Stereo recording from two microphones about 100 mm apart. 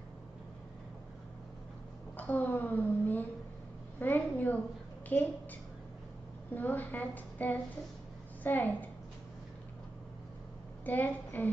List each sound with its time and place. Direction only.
2.1 s speech: 15° left (ahead or behind)
6.5 s a woman's voice: 20° left (ahead or behind)
10.9 s a woman's voice: 20° left (ahead or behind)